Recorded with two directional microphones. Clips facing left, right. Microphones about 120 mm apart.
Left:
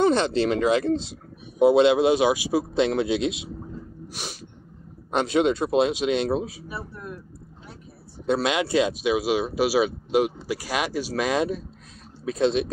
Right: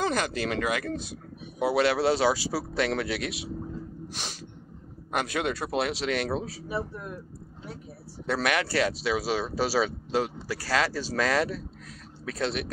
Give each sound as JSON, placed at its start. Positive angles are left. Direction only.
{"t": 0.0, "sound": "a man's voice", "side_deg": 25}
{"t": 4.1, "sound": "snort", "side_deg": 10}
{"t": 5.1, "sound": "a man's voice", "side_deg": 20}
{"t": 8.3, "sound": "a man's voice", "side_deg": 20}